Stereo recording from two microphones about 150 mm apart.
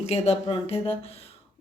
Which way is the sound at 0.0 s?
45° left (ahead or behind).